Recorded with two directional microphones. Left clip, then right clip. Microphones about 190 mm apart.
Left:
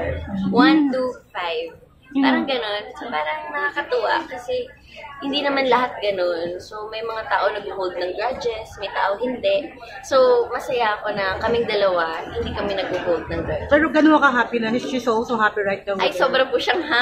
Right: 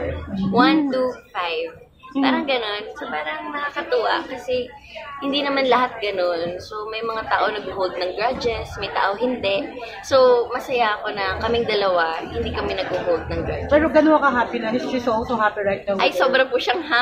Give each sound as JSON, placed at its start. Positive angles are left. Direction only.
{"t": 0.6, "sound": "a woman's voice", "side_deg": -5}
{"t": 13.7, "sound": "speech", "side_deg": 35}
{"t": 16.0, "sound": "a woman's voice", "side_deg": -5}